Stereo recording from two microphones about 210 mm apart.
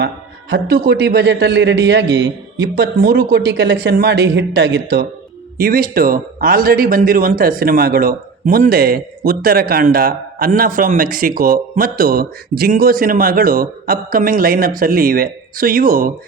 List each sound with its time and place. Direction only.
0.5 s a man's voice: 50° right (ahead or behind)